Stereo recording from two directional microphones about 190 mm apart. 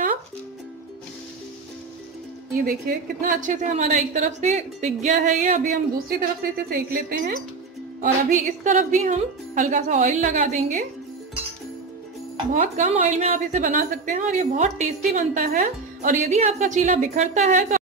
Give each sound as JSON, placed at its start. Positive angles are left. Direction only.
{"t": 2.5, "sound": "a woman's voice", "side_deg": -45}
{"t": 12.5, "sound": "a woman's voice", "side_deg": -40}